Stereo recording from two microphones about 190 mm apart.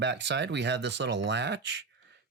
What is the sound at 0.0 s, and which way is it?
Speech, 65° right (ahead or behind).